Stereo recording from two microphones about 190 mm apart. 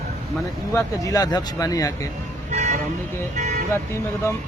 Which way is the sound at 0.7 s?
20° left (ahead or behind).